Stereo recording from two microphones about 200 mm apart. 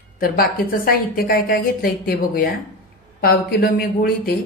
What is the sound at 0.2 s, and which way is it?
A woman's voice, 45° left (ahead or behind).